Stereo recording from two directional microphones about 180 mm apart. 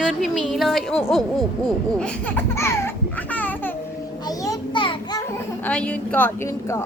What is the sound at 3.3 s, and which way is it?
Babbling, 10° left (ahead or behind).